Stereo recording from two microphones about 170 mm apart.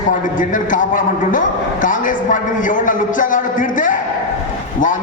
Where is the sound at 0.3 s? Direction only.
50° left (ahead or behind).